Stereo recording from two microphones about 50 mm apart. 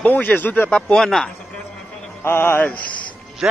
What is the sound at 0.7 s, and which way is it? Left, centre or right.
Speech, centre.